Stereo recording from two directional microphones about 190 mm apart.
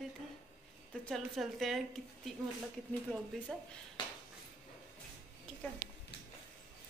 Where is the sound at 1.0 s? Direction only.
Centre (ahead or behind).